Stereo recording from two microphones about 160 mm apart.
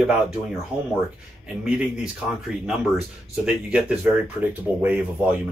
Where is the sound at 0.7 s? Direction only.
5° right (ahead or behind).